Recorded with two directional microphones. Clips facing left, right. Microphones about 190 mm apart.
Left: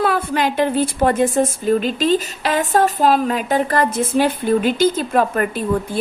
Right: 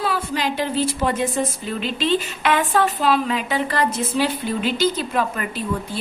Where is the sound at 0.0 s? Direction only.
55° left (ahead or behind).